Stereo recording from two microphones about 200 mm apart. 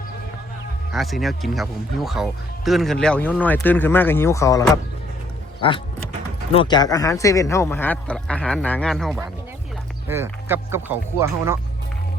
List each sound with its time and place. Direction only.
0.9 s speech: centre (ahead or behind)
10.1 s speech: 10° right (ahead or behind)